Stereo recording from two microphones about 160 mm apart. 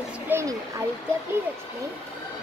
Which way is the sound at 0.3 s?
15° right (ahead or behind).